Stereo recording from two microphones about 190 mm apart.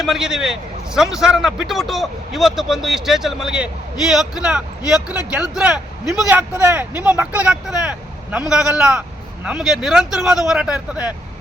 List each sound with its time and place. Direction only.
0.0 s speech: centre (ahead or behind)
4.9 s speech: 20° left (ahead or behind)
5.3 s a man's voice: 5° right (ahead or behind)